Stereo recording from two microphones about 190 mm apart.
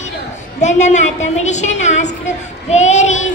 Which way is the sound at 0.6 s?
40° left (ahead or behind).